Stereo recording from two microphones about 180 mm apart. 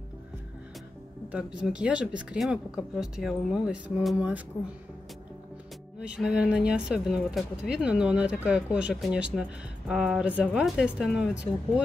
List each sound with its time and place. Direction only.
1.3 s speech: 5° right (ahead or behind)
5.9 s speech: 5° right (ahead or behind)